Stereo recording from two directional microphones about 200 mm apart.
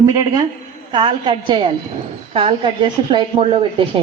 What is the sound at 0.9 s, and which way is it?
A woman's voice, 25° right (ahead or behind).